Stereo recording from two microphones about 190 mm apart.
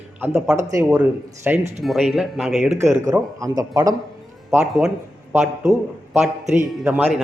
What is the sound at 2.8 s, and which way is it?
A man's voice, 15° right (ahead or behind).